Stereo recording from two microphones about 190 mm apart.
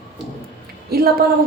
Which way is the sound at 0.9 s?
55° right (ahead or behind).